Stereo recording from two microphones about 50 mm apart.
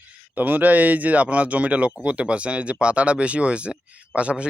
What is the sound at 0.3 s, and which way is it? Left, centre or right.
Speech, right.